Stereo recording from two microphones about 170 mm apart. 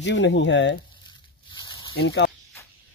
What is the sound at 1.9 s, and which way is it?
Speech, 85° left.